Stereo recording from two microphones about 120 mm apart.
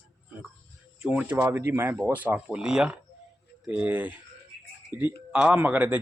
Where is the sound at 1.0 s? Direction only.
10° right (ahead or behind).